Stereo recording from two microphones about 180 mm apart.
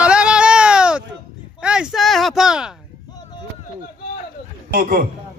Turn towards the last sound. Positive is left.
turn(degrees=-50)  # may be behind; listen again after turning